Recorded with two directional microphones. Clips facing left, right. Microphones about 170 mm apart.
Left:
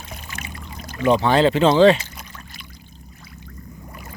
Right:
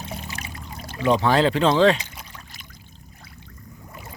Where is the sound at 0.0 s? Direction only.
30° right (ahead or behind).